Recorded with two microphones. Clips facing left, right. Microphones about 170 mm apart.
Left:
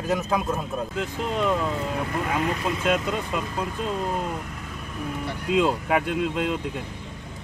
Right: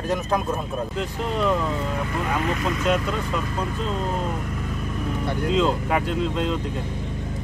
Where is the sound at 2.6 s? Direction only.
15° left (ahead or behind).